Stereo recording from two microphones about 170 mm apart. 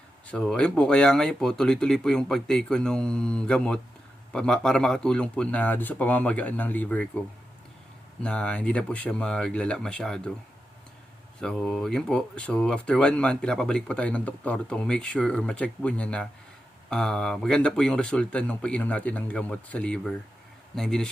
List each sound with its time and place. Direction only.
0.3 s speech: 5° left (ahead or behind)
8.2 s speech: 5° left (ahead or behind)
11.3 s speech: 5° left (ahead or behind)